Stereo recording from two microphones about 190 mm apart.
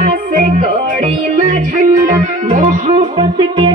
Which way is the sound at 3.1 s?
25° right (ahead or behind).